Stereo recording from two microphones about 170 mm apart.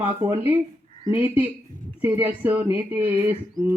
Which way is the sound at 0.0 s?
10° right (ahead or behind).